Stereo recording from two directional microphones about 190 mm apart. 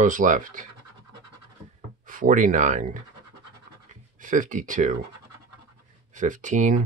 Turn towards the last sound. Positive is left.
turn(degrees=-40)  # may be behind; listen again after turning